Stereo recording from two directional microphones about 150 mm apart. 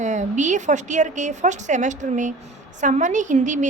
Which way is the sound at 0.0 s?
55° right (ahead or behind).